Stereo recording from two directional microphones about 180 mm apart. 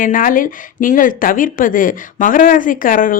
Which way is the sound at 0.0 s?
50° left (ahead or behind).